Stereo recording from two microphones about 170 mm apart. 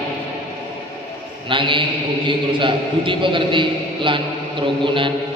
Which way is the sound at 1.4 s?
30° right (ahead or behind).